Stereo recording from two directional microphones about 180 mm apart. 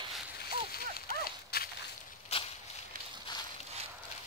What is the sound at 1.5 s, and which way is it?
Walk, 60° left (ahead or behind).